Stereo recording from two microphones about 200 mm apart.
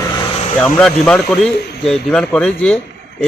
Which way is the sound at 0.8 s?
5° left (ahead or behind).